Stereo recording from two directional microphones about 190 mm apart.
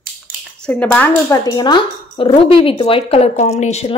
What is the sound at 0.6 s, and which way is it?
Speech, 5° left (ahead or behind).